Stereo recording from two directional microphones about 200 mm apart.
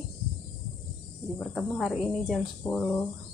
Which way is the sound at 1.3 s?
5° left (ahead or behind).